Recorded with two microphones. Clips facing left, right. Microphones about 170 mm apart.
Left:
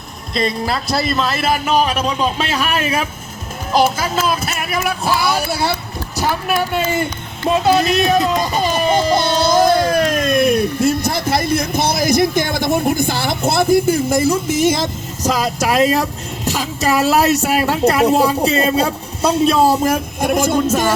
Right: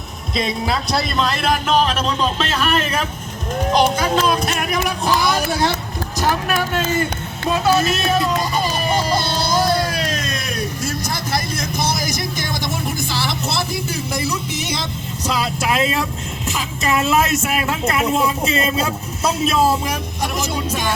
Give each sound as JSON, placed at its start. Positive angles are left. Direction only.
{"t": 0.3, "sound": "a man's voice", "side_deg": 0}
{"t": 7.5, "sound": "speech", "side_deg": 40}
{"t": 9.9, "sound": "a sound", "side_deg": 50}
{"t": 10.8, "sound": "a man's voice", "side_deg": 60}
{"t": 19.6, "sound": "a man's voice", "side_deg": 45}